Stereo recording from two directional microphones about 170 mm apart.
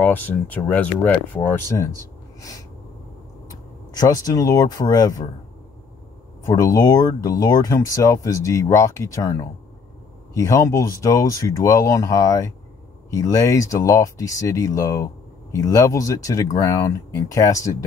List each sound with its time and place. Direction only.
0.0 s speech: 10° left (ahead or behind)
4.0 s speech: 20° left (ahead or behind)
6.4 s speech: 20° left (ahead or behind)